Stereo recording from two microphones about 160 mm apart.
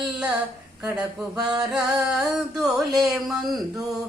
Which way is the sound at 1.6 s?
5° right (ahead or behind).